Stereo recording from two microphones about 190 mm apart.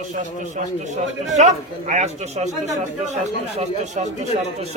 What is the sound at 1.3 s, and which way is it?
A man's voice, 40° right (ahead or behind).